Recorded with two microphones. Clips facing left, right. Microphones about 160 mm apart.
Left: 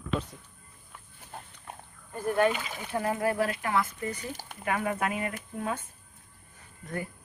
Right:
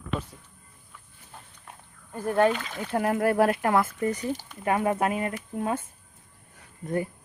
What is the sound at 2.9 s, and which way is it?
Speech, 60° right (ahead or behind).